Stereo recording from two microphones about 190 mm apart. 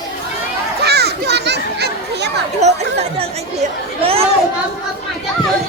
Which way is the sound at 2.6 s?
35° right (ahead or behind).